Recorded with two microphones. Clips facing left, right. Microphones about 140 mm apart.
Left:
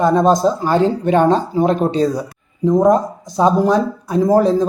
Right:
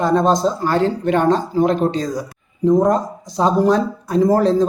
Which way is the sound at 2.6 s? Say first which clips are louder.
Left 2 dB; centre (ahead or behind).